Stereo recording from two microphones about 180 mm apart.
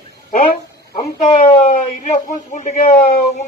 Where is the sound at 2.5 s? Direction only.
40° left (ahead or behind).